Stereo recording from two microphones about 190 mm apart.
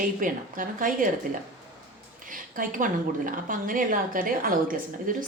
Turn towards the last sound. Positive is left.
turn(degrees=-45)  # may be behind; listen again after turning